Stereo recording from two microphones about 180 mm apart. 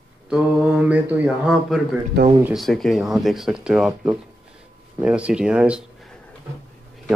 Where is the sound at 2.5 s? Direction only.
Centre (ahead or behind).